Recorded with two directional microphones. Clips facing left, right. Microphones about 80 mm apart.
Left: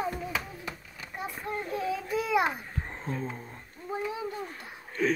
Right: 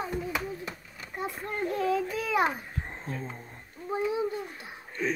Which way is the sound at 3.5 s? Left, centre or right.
Centre.